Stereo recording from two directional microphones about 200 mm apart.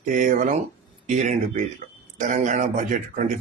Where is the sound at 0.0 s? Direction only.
40° right (ahead or behind).